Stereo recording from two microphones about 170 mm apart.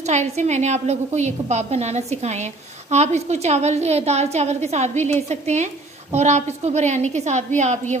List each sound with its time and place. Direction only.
0.0 s a woman's voice: 45° right (ahead or behind)